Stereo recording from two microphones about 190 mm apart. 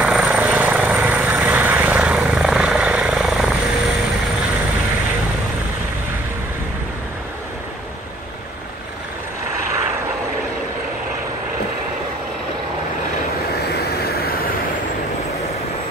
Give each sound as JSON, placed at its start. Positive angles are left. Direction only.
{"t": 0.0, "sound": "helicopter", "side_deg": -5}
{"t": 13.7, "sound": "vehicle", "side_deg": 55}